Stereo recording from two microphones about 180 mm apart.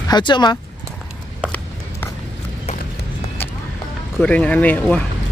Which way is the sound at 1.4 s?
10° left (ahead or behind).